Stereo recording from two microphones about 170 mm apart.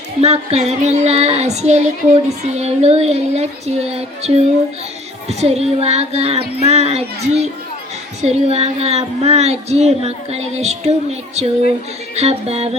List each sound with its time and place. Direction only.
0.2 s child singing: 40° right (ahead or behind)